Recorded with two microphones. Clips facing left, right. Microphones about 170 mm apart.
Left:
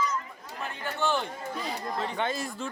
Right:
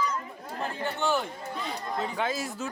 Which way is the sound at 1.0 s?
10° right (ahead or behind).